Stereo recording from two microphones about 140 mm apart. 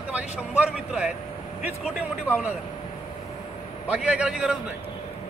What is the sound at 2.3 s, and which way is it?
Speech, 15° left (ahead or behind).